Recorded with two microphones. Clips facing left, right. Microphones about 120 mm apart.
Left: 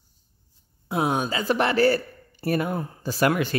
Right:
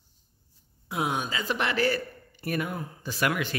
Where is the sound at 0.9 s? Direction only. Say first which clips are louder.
Left 5 dB; 35° left (ahead or behind).